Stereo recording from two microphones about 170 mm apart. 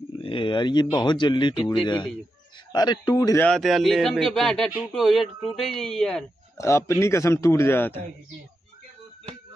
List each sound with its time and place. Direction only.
0.2 s speech: 30° left (ahead or behind)
3.4 s speech: centre (ahead or behind)
6.6 s a man's voice: 15° left (ahead or behind)